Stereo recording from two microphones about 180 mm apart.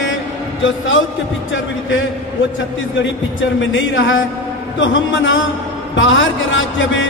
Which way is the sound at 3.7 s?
90° left.